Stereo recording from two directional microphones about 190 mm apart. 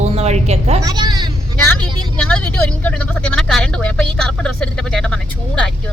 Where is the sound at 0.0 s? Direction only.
35° right (ahead or behind).